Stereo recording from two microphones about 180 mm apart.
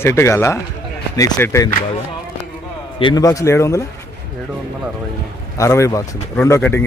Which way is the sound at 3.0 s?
20° left (ahead or behind).